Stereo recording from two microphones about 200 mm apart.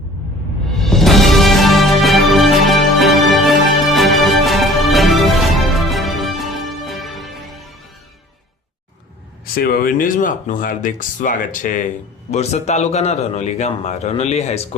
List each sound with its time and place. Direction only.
0.8 s music: centre (ahead or behind)
9.6 s a man's voice: 50° left (ahead or behind)